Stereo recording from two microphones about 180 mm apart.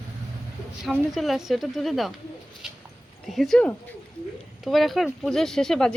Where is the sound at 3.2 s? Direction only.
Centre (ahead or behind).